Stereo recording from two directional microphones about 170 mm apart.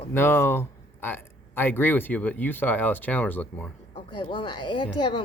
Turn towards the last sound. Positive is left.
turn(degrees=25)  # may be behind; listen again after turning